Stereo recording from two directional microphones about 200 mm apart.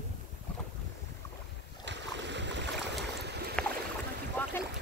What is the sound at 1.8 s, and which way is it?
Boat, 60° right (ahead or behind).